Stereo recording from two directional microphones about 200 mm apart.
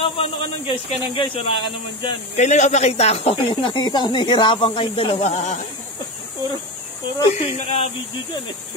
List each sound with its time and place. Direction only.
0.0 s speech: 25° left (ahead or behind)
7.3 s speech: 30° left (ahead or behind)